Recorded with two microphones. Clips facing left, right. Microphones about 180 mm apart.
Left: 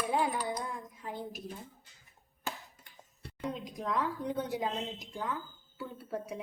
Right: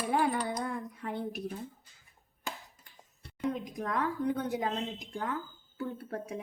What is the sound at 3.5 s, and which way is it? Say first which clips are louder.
A woman's voice: left 2 dB; 50° right (ahead or behind).